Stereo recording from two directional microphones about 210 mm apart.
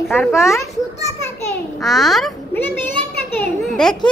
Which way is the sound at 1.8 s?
Centre (ahead or behind).